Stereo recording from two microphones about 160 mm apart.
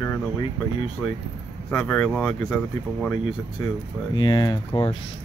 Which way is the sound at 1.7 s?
10° left (ahead or behind).